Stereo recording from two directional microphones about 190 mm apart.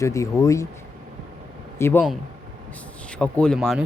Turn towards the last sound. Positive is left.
turn(degrees=0)  # may be behind; listen again after turning